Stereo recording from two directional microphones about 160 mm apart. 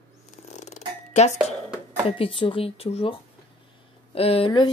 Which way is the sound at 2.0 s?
35° left (ahead or behind).